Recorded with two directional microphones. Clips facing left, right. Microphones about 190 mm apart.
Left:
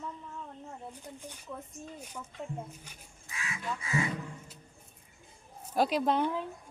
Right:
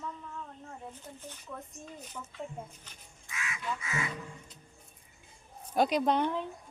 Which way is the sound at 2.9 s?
10° left (ahead or behind).